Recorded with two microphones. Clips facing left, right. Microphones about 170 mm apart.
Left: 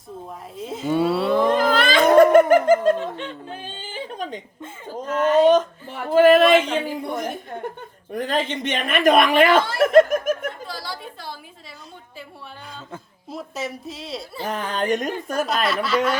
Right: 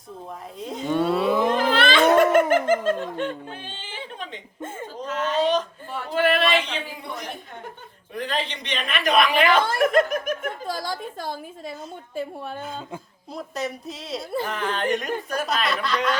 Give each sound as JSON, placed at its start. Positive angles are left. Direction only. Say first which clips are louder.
{"t": 0.6, "sound": "cattle", "louder": "left 2 dB", "side_deg": 5}
{"t": 1.5, "sound": "music", "louder": "left 2 dB", "side_deg": 40}
{"t": 3.0, "sound": "chuckle", "louder": "right 2 dB", "side_deg": -50}
{"t": 3.5, "sound": "a sound", "louder": "left 4 dB", "side_deg": 40}
{"t": 8.1, "sound": "speech", "louder": "left 5 dB", "side_deg": 45}
{"t": 10.0, "sound": "snicker", "louder": "left 6 dB", "side_deg": 45}
{"t": 10.4, "sound": "a sound", "louder": "right 2 dB", "side_deg": -45}
{"t": 12.1, "sound": "a woman's voice", "louder": "right 11 dB", "side_deg": -45}
{"t": 13.3, "sound": "a woman's voice", "louder": "even", "side_deg": 0}
{"t": 14.4, "sound": "speech", "louder": "left 5 dB", "side_deg": 40}
{"t": 15.6, "sound": "a woman's voice", "louder": "left 3 dB", "side_deg": 5}